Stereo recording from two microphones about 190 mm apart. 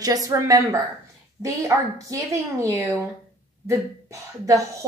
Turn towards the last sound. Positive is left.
turn(degrees=-15)  # may be behind; listen again after turning